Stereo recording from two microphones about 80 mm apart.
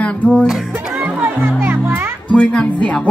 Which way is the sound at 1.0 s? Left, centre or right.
Centre.